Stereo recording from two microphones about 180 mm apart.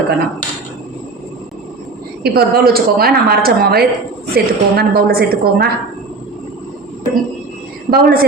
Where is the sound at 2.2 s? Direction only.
60° right (ahead or behind).